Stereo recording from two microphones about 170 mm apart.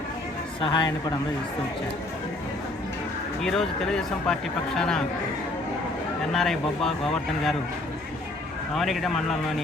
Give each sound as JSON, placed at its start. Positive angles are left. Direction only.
{"t": 0.6, "sound": "a man's voice", "side_deg": 25}
{"t": 3.4, "sound": "speech", "side_deg": 0}
{"t": 6.3, "sound": "speech", "side_deg": 0}
{"t": 8.7, "sound": "speech", "side_deg": 0}